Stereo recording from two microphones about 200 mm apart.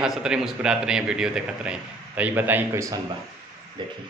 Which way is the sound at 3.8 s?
25° right (ahead or behind).